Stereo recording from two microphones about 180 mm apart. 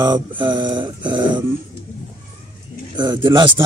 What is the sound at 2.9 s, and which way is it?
Speech, 25° right (ahead or behind).